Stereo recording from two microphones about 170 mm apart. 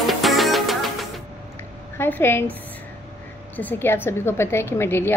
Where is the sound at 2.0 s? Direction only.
10° left (ahead or behind).